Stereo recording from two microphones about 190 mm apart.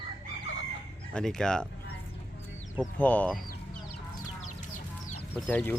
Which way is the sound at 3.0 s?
10° left (ahead or behind).